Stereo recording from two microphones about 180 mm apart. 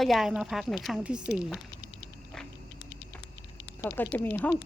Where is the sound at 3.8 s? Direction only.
10° left (ahead or behind).